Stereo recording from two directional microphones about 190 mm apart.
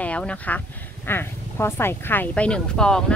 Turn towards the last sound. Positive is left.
turn(degrees=5)  # may be behind; listen again after turning